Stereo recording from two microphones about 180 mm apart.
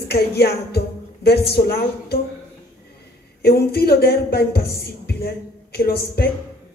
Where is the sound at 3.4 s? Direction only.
60° left (ahead or behind).